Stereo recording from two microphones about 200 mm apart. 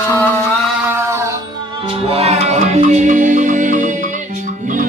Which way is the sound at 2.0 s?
30° right (ahead or behind).